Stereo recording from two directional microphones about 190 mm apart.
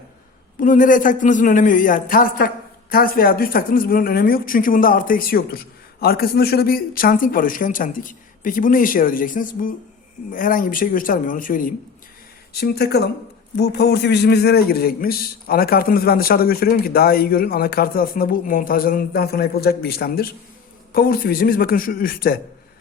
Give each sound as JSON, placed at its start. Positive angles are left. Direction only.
{"t": 0.6, "sound": "a woman's voice", "side_deg": 45}
{"t": 12.5, "sound": "a woman's voice", "side_deg": 55}